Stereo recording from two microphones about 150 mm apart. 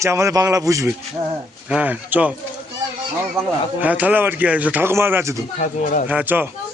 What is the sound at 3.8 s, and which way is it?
A man's voice, 10° right (ahead or behind).